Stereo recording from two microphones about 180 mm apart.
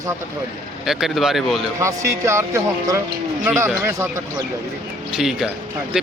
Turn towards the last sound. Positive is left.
turn(degrees=-5)  # may be behind; listen again after turning